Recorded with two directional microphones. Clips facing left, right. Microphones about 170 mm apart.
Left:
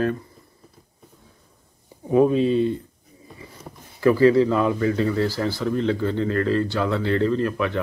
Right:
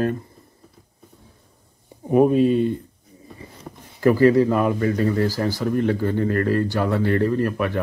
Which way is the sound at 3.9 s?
45° right (ahead or behind).